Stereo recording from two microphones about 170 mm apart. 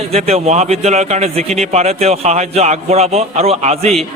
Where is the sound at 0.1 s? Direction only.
35° right (ahead or behind).